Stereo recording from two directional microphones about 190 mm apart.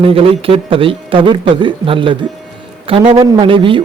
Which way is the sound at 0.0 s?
30° right (ahead or behind).